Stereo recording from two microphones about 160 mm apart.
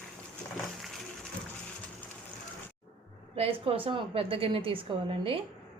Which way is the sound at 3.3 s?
35° right (ahead or behind).